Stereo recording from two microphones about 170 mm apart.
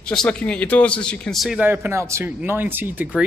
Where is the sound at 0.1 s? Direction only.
5° left (ahead or behind).